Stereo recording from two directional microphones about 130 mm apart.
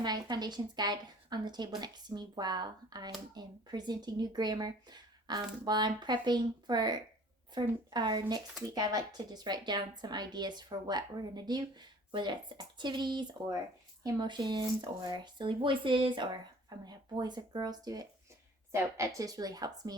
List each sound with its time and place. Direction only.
0.0 s a woman's voice: 35° right (ahead or behind)